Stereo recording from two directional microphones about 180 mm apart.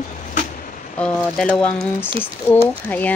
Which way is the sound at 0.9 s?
5° left (ahead or behind).